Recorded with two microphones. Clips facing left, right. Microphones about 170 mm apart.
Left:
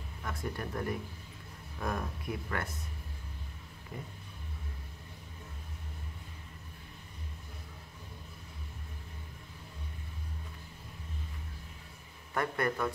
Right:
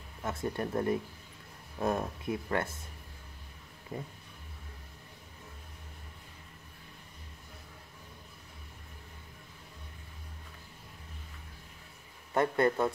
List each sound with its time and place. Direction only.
0.2 s speech: 25° right (ahead or behind)
3.9 s speech: 30° right (ahead or behind)
12.4 s speech: 25° right (ahead or behind)